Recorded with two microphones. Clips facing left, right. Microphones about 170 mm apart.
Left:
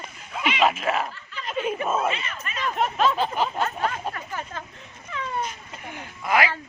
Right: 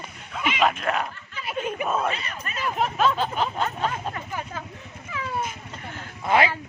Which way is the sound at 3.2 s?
5° left (ahead or behind).